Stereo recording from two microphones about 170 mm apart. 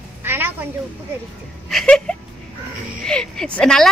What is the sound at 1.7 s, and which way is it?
Speech, centre (ahead or behind).